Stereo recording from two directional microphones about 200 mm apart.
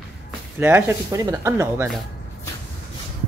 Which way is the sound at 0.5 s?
10° right (ahead or behind).